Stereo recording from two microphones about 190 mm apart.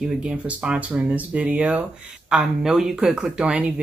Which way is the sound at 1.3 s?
5° right (ahead or behind).